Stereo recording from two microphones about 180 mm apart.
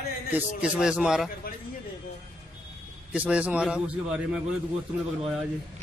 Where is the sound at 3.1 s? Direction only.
5° right (ahead or behind).